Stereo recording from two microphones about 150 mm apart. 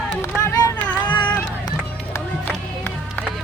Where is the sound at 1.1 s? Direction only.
30° left (ahead or behind).